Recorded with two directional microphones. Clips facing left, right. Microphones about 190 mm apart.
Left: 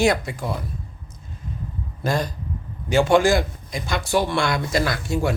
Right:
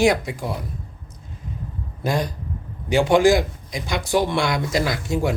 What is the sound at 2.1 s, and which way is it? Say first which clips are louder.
A man's voice: even; 15° right (ahead or behind).